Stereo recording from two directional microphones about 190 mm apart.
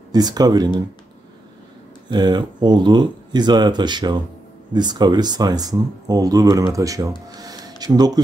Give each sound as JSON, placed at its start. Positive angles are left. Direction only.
{"t": 0.1, "sound": "speech", "side_deg": -20}
{"t": 2.0, "sound": "speech", "side_deg": -25}